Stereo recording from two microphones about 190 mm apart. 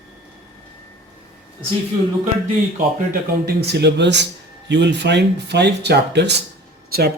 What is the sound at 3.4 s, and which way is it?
Speech, 60° right (ahead or behind).